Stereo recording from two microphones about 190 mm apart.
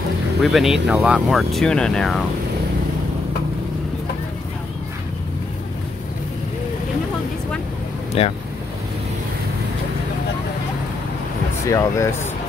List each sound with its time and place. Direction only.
0.4 s speech: centre (ahead or behind)
8.2 s speech: 35° left (ahead or behind)
11.6 s speech: 15° left (ahead or behind)